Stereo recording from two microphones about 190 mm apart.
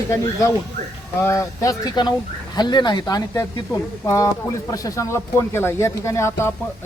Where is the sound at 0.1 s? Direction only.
15° left (ahead or behind).